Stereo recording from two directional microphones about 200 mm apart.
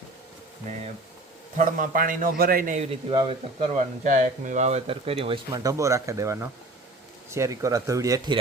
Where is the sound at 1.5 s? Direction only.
40° right (ahead or behind).